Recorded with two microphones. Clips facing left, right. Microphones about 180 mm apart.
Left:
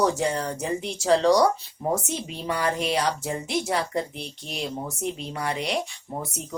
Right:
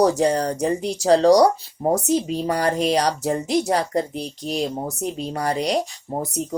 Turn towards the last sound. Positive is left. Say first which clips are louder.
# right 7 dB
turn(degrees=-40)  # may be behind; listen again after turning